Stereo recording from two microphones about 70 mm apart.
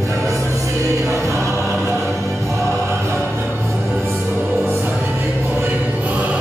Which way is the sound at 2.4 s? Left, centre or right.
Right.